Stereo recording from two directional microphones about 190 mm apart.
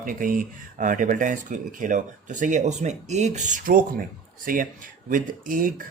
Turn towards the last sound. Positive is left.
turn(degrees=-45)  # may be behind; listen again after turning